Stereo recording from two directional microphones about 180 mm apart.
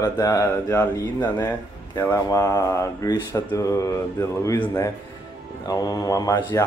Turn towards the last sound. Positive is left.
turn(degrees=20)  # may be behind; listen again after turning